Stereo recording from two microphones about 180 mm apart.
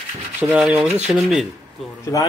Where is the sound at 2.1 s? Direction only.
20° left (ahead or behind).